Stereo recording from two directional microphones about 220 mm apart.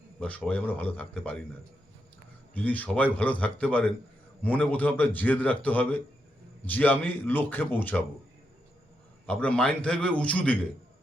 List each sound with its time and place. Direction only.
0.2 s a man's voice: 5° left (ahead or behind)
2.6 s a man's voice: 5° left (ahead or behind)
9.2 s a man's voice: 5° left (ahead or behind)